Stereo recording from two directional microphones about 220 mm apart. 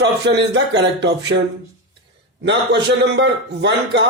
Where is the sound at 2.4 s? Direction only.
50° right (ahead or behind).